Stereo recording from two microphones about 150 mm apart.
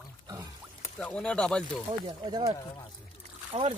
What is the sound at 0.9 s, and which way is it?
Speech, 5° left (ahead or behind).